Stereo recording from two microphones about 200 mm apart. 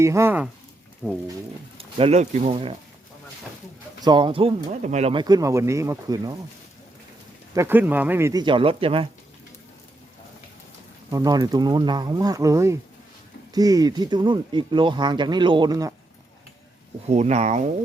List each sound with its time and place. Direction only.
0.0 s speech: 15° right (ahead or behind)
1.0 s speech: 10° left (ahead or behind)
1.8 s speech: 30° right (ahead or behind)
4.0 s speech: 25° right (ahead or behind)
5.2 s speech: 15° right (ahead or behind)
7.5 s speech: 10° right (ahead or behind); by 9.0 s 25° right (ahead or behind)
11.1 s speech: 20° right (ahead or behind)
17.1 s speech: 35° right (ahead or behind)